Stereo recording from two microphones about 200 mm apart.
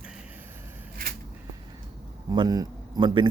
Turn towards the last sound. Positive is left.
turn(degrees=-25)  # may be behind; listen again after turning